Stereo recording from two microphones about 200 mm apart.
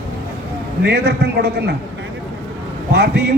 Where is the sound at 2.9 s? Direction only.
55° right (ahead or behind).